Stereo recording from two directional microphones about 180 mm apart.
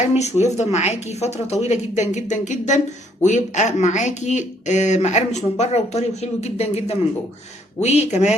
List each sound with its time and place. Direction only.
0.0 s speech: 40° left (ahead or behind)
8.0 s speech: 40° left (ahead or behind)